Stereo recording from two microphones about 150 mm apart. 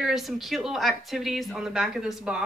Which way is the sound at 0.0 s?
Centre (ahead or behind).